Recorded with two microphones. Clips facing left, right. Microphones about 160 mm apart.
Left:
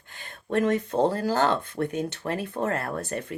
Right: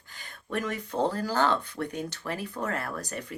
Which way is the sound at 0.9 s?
55° left (ahead or behind).